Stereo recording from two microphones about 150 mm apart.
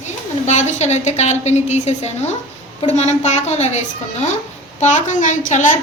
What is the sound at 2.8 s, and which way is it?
A woman's voice, 50° left (ahead or behind).